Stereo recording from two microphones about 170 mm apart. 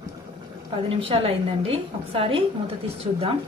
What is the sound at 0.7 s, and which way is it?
A woman's voice, 30° right (ahead or behind).